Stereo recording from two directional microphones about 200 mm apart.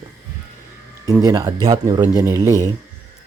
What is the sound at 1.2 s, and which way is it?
Speech, 15° right (ahead or behind).